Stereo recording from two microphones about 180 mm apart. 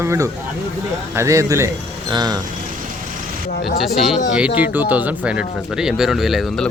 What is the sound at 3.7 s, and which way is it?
Speech, centre (ahead or behind).